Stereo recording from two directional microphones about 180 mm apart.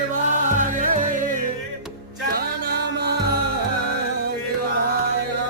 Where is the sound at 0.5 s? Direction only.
45° right (ahead or behind).